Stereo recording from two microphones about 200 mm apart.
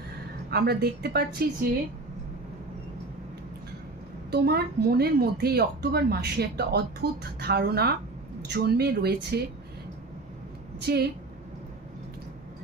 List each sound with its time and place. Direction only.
0.5 s a woman's voice: 50° right (ahead or behind)
4.3 s a woman's voice: 50° right (ahead or behind)
10.9 s a woman's voice: 55° right (ahead or behind)